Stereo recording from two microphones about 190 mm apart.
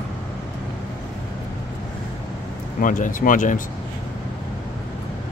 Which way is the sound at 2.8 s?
45° left (ahead or behind).